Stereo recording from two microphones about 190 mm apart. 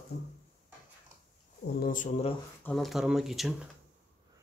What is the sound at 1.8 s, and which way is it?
Speech, 45° left (ahead or behind).